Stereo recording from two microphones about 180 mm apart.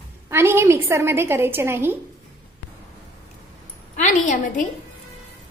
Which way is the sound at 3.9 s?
45° left (ahead or behind).